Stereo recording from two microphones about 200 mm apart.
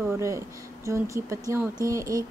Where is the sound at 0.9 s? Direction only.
15° right (ahead or behind).